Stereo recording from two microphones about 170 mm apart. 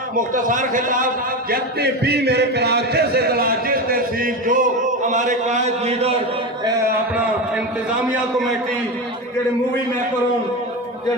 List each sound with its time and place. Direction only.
0.3 s a man's voice: 50° right (ahead or behind)